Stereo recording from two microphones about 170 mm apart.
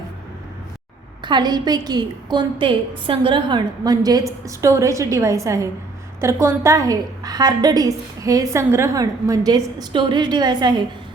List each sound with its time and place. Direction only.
1.2 s a woman's voice: 25° right (ahead or behind)